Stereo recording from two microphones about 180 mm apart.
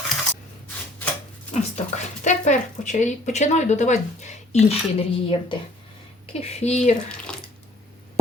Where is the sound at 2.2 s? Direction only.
40° left (ahead or behind).